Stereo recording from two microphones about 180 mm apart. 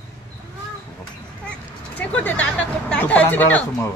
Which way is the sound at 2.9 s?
10° left (ahead or behind).